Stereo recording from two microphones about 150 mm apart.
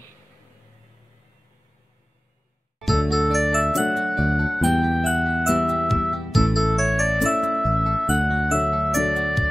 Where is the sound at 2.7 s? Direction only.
Centre (ahead or behind).